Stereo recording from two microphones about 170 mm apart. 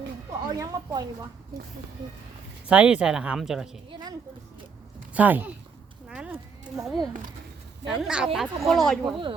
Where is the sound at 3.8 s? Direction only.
25° right (ahead or behind).